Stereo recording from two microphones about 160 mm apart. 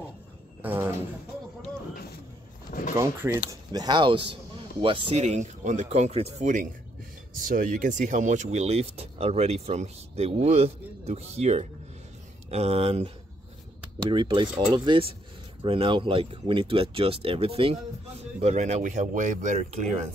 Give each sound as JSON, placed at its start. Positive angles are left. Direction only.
{"t": 0.6, "sound": "speech", "side_deg": -10}
{"t": 3.2, "sound": "speech", "side_deg": -15}
{"t": 3.7, "sound": "speech", "side_deg": -25}